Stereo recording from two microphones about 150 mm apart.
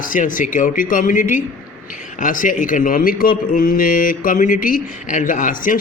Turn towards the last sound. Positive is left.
turn(degrees=65)  # may be behind; listen again after turning